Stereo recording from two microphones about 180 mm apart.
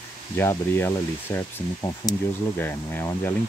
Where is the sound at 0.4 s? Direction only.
15° left (ahead or behind).